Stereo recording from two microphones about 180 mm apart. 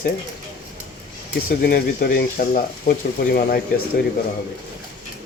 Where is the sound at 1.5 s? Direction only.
55° left (ahead or behind).